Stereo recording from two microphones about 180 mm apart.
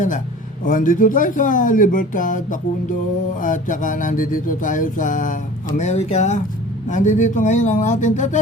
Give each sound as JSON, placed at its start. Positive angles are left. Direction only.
{"t": 0.6, "sound": "music", "side_deg": 50}